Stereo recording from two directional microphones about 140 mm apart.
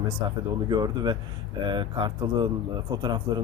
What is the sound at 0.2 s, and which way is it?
A man's voice, 30° right (ahead or behind).